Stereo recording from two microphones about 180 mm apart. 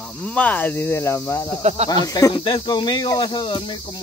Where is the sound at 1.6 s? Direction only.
35° right (ahead or behind).